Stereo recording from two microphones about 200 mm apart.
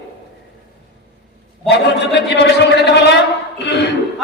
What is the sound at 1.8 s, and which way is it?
A man's voice, 60° left (ahead or behind).